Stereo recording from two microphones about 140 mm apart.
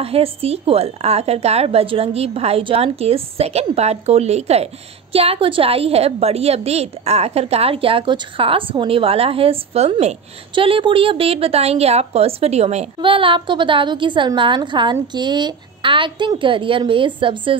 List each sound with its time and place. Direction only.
0.0 s a woman's voice: 45° right (ahead or behind)
10.5 s a woman's voice: 40° right (ahead or behind)
13.0 s a woman's voice: 40° right (ahead or behind)